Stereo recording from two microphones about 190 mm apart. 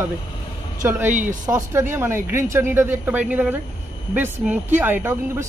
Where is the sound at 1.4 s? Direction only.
15° right (ahead or behind).